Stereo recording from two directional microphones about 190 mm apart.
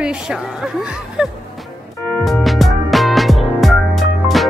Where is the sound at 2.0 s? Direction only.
5° left (ahead or behind).